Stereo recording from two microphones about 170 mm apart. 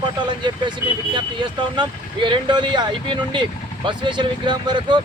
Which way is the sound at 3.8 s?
25° right (ahead or behind).